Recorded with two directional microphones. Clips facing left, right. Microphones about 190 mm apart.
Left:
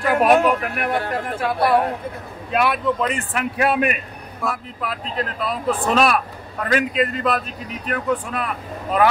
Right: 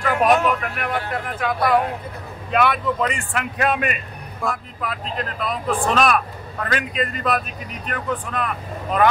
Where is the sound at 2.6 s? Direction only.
Centre (ahead or behind).